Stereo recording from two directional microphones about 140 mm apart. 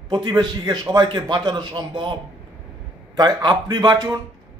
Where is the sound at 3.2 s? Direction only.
30° right (ahead or behind).